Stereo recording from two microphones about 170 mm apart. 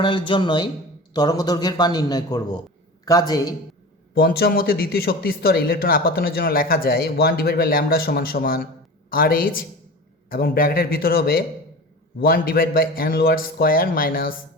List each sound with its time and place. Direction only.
0.0 s a man's voice: 30° left (ahead or behind)
4.1 s speech: 65° left (ahead or behind)